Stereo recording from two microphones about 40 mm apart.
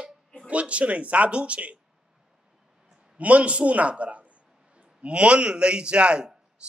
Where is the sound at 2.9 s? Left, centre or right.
Centre.